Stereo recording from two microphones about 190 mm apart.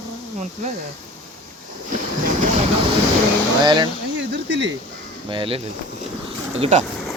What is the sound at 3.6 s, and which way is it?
Speech, 25° right (ahead or behind).